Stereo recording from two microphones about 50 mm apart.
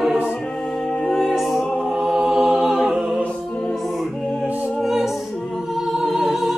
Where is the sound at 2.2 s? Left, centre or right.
Right.